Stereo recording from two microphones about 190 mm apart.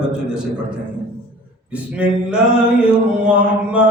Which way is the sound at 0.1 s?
5° right (ahead or behind).